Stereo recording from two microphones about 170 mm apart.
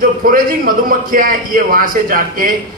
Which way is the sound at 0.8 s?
55° right (ahead or behind).